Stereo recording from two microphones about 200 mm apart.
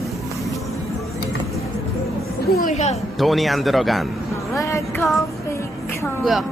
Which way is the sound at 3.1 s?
Centre (ahead or behind).